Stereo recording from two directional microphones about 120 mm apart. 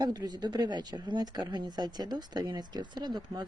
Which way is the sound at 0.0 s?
35° right (ahead or behind).